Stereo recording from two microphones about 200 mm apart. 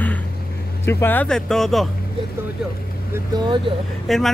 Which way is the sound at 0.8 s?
10° left (ahead or behind).